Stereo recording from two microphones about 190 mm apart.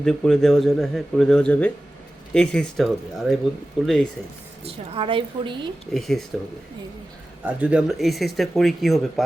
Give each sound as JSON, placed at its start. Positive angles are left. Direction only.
{"t": 0.0, "sound": "speech", "side_deg": 5}
{"t": 4.6, "sound": "a woman's voice", "side_deg": -30}
{"t": 5.9, "sound": "speech", "side_deg": 0}
{"t": 7.4, "sound": "speech", "side_deg": -5}